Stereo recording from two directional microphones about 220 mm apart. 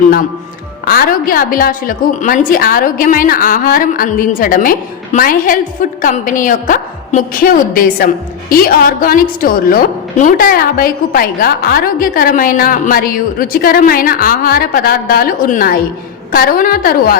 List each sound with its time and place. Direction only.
0.9 s a woman's voice: 40° left (ahead or behind)